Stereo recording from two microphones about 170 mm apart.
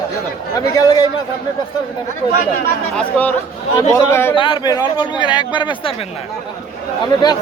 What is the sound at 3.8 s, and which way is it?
Speech, 15° left (ahead or behind).